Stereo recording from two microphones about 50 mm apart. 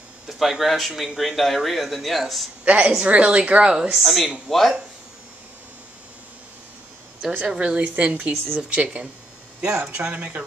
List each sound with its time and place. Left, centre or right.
0.3 s speech: centre
2.6 s a woman's voice: right
4.0 s speech: centre
7.3 s a woman's voice: centre